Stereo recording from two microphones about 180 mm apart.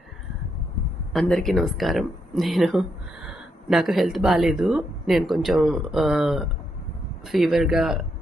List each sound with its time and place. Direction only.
1.1 s speech: centre (ahead or behind)